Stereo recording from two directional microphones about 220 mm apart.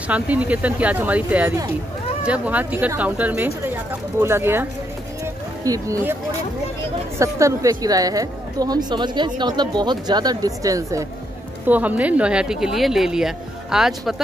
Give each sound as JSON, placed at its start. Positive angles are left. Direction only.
{"t": 0.1, "sound": "a woman's voice", "side_deg": -5}
{"t": 5.2, "sound": "music", "side_deg": -15}
{"t": 7.2, "sound": "a woman's voice", "side_deg": -15}